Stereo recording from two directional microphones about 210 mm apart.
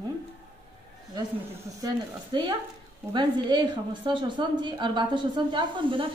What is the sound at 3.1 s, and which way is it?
A woman's voice, 20° right (ahead or behind).